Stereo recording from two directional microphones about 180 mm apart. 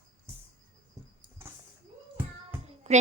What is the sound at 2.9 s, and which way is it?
Music, 35° right (ahead or behind).